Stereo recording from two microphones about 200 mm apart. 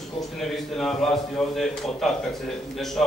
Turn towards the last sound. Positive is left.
turn(degrees=0)  # may be behind; listen again after turning